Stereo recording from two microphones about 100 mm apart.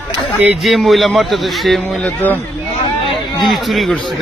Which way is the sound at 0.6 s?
Centre (ahead or behind).